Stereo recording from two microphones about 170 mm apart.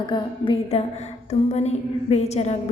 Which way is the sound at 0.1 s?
30° left (ahead or behind).